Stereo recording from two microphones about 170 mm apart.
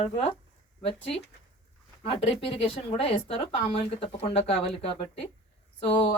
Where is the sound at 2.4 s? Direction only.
35° left (ahead or behind).